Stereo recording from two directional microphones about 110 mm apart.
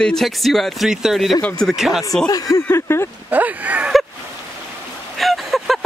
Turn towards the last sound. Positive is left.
turn(degrees=0)  # may be behind; listen again after turning